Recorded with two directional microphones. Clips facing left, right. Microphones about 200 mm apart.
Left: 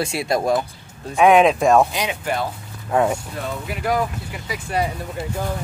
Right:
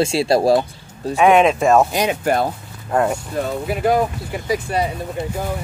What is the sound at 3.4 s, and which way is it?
Speech, 35° right (ahead or behind).